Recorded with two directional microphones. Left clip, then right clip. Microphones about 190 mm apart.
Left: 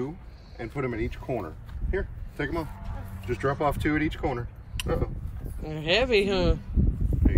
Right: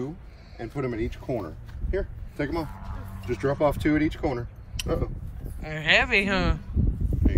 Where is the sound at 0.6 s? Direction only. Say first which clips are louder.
Right 1 dB; 15° right (ahead or behind).